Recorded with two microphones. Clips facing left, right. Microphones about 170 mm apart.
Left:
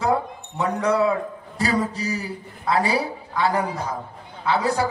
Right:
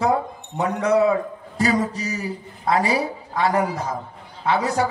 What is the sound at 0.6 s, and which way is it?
A woman's voice, 30° left (ahead or behind).